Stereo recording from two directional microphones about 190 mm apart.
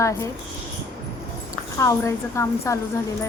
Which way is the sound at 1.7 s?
15° left (ahead or behind).